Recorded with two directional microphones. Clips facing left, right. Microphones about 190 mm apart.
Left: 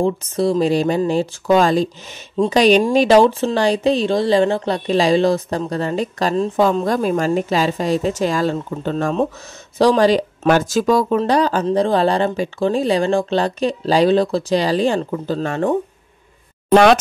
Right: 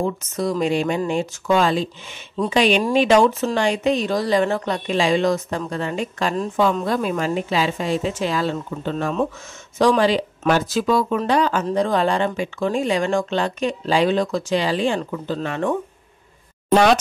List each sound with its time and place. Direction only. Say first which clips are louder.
0.0 s speech: left 5 dB; 30° left (ahead or behind)
6.3 s a woman's voice: left 5 dB; 25° left (ahead or behind)
6.6 s speech: left 2 dB; 40° left (ahead or behind)